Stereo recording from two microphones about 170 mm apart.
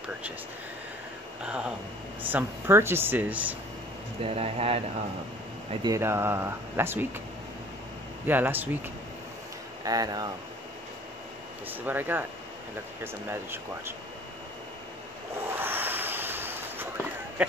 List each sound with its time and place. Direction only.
1.4 s speech: 5° right (ahead or behind)
4.2 s speech: 35° right (ahead or behind)
5.9 s speech: 15° right (ahead or behind)
8.3 s speech: 10° right (ahead or behind)
9.8 s speech: 20° right (ahead or behind)
11.7 s speech: 10° right (ahead or behind)
15.5 s a sound: 10° right (ahead or behind)